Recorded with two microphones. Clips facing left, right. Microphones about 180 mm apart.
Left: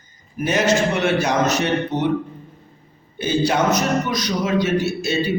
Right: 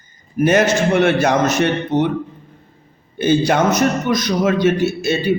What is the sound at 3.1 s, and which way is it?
A man's voice, 55° right (ahead or behind).